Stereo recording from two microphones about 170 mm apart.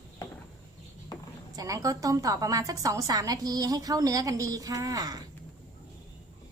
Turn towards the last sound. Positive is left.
turn(degrees=-20)  # may be behind; listen again after turning